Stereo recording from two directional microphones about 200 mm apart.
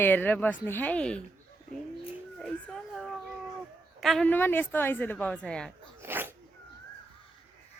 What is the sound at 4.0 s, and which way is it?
Speech, centre (ahead or behind).